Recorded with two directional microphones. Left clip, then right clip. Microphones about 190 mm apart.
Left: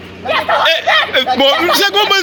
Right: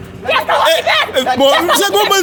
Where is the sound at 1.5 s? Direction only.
5° right (ahead or behind).